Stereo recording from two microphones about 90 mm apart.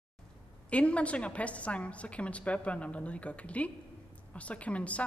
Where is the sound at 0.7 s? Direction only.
15° left (ahead or behind).